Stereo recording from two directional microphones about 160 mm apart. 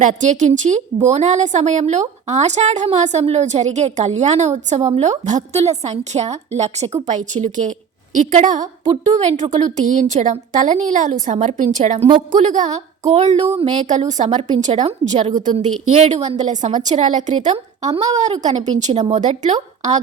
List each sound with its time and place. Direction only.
0.0 s a woman's voice: 50° right (ahead or behind)